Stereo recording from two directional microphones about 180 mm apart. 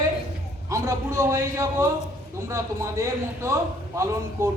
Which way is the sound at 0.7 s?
15° right (ahead or behind).